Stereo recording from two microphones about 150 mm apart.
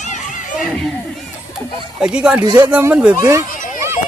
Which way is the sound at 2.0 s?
5° right (ahead or behind).